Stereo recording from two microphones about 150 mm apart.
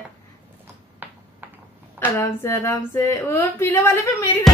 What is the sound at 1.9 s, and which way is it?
Speech, 20° left (ahead or behind).